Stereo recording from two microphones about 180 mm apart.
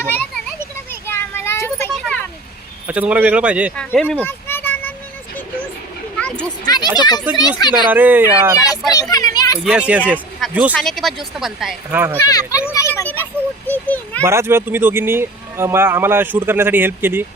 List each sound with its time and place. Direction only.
0.0 s children playing: 10° left (ahead or behind)
2.8 s speech: 10° right (ahead or behind)
3.8 s a sound: 5° left (ahead or behind)
6.1 s a sound: 5° left (ahead or behind)
6.7 s speech: 25° left (ahead or behind)
7.9 s speech: 10° right (ahead or behind)
8.9 s children playing: 20° left (ahead or behind)
9.6 s speech: 5° right (ahead or behind)
12.3 s a sound: 20° left (ahead or behind)
13.7 s a child's voice: 10° left (ahead or behind)
14.2 s speech: 15° right (ahead or behind)